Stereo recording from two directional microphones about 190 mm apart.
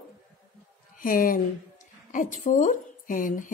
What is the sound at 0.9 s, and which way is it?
A woman's voice, 45° left (ahead or behind).